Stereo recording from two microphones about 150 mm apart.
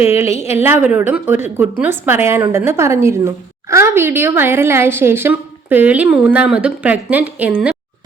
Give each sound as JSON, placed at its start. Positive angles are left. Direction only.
{"t": 0.1, "sound": "a woman's voice", "side_deg": -20}